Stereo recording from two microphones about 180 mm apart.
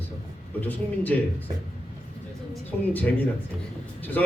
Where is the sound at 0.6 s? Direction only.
10° left (ahead or behind).